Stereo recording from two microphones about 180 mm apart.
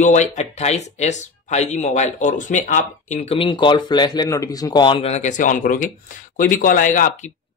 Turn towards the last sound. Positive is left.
turn(degrees=45)  # may be behind; listen again after turning